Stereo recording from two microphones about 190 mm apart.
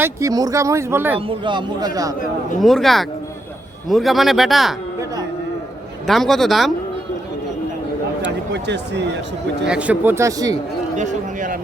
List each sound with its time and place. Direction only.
0.0 s speech: 15° right (ahead or behind)
1.3 s a man's voice: 25° right (ahead or behind)
2.6 s a man's voice: centre (ahead or behind)
6.1 s a man's voice: centre (ahead or behind)
8.2 s speech: 65° right (ahead or behind)
9.6 s speech: 5° right (ahead or behind)
10.9 s speech: 40° right (ahead or behind)